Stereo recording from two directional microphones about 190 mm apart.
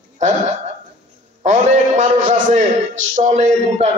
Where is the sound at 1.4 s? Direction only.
40° right (ahead or behind).